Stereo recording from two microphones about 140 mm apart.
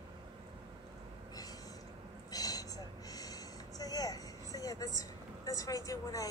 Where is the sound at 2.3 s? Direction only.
25° left (ahead or behind).